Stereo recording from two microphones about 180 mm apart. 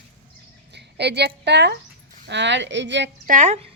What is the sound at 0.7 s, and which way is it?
A woman's voice, 70° right (ahead or behind).